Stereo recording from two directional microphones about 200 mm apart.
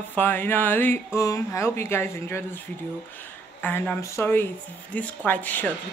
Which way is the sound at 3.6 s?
10° left (ahead or behind).